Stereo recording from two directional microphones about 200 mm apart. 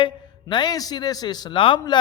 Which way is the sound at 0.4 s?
20° left (ahead or behind).